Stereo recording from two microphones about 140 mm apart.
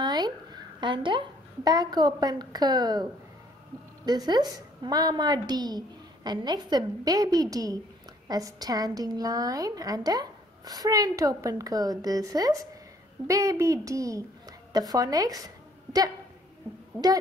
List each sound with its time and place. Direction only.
0.0 s a woman's voice: 30° right (ahead or behind)